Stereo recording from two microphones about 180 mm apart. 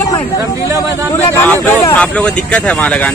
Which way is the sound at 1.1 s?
15° left (ahead or behind).